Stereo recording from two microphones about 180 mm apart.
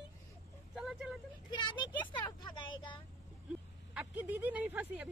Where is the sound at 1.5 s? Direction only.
25° left (ahead or behind).